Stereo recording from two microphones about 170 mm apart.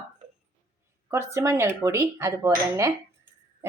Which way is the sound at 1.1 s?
15° right (ahead or behind).